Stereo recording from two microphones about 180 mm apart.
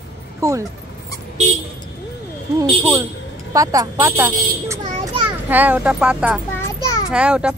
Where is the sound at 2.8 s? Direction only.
10° right (ahead or behind).